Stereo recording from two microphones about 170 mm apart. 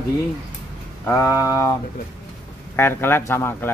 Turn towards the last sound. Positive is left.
turn(degrees=15)  # may be behind; listen again after turning